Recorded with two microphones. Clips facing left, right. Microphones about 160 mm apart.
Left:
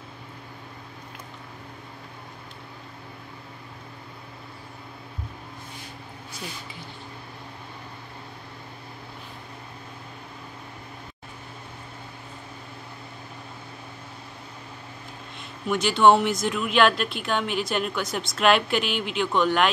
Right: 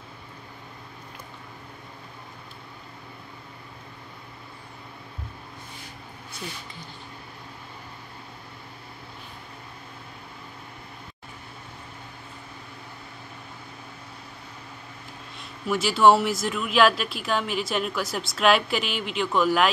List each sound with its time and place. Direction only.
15.3 s speech: centre (ahead or behind)